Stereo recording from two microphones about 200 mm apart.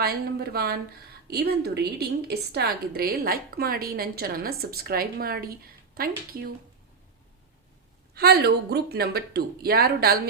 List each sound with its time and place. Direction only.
0.0 s a woman's voice: 50° right (ahead or behind)
8.1 s a woman's voice: 50° right (ahead or behind)